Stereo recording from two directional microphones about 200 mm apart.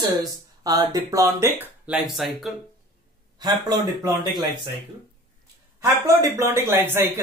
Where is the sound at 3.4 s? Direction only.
20° right (ahead or behind).